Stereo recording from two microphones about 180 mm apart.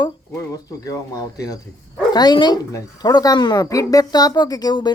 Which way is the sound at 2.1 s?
25° left (ahead or behind).